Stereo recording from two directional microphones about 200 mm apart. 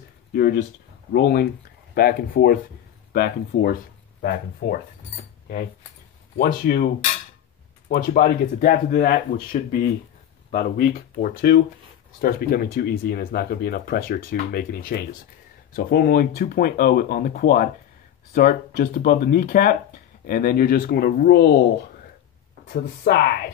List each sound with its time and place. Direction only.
0.3 s speech: 50° left (ahead or behind)
6.3 s speech: 50° left (ahead or behind)
7.9 s speech: 45° left (ahead or behind)
22.7 s speech: 50° left (ahead or behind)